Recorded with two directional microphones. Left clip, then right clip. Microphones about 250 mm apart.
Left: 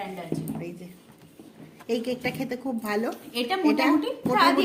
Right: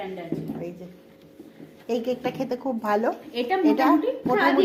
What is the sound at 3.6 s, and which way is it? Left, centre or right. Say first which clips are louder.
Speech: right 2 dB; centre.